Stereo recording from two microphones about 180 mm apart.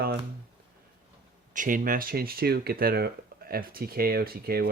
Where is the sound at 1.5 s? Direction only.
45° right (ahead or behind).